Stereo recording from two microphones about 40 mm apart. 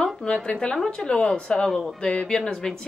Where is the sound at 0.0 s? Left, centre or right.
Centre.